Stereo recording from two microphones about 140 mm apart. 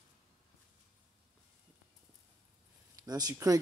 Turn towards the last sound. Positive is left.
turn(degrees=-25)  # may be behind; listen again after turning